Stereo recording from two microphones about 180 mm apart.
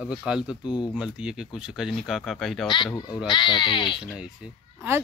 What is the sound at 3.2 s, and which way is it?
Speech, 25° left (ahead or behind).